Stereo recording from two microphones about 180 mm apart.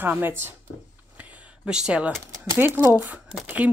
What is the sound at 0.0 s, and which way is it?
Speech, 10° right (ahead or behind).